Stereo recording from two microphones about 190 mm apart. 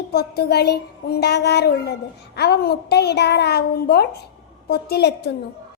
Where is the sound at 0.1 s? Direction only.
55° left (ahead or behind).